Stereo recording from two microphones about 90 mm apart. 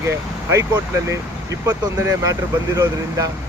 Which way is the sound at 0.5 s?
35° right (ahead or behind).